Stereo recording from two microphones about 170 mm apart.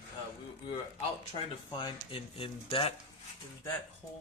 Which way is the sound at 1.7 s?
25° left (ahead or behind).